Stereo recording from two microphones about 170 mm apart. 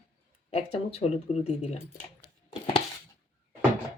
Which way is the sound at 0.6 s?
40° left (ahead or behind).